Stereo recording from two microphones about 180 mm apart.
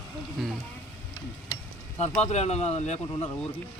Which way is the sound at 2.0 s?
40° left (ahead or behind).